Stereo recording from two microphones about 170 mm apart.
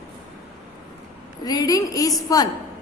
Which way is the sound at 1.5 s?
20° left (ahead or behind).